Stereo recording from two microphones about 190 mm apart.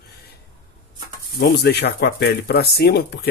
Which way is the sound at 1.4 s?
60° left (ahead or behind).